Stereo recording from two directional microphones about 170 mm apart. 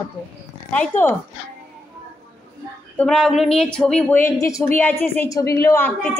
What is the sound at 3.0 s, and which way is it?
Speech, 5° left (ahead or behind).